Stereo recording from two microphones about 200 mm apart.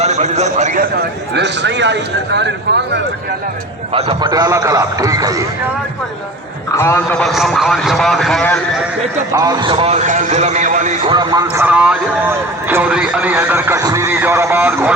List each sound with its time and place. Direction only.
0.0 s a man's voice: 35° right (ahead or behind)
1.3 s speech: 60° right (ahead or behind)
3.9 s a man's voice: 30° right (ahead or behind)
6.7 s a man's voice: 15° left (ahead or behind)
9.3 s a man's voice: 20° right (ahead or behind); by 10.9 s 40° right (ahead or behind)
11.0 s a man's voice: 25° right (ahead or behind)